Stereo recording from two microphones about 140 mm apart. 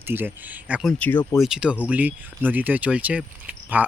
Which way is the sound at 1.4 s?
5° right (ahead or behind).